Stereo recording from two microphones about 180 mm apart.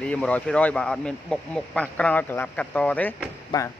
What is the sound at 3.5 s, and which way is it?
Speech, 20° left (ahead or behind).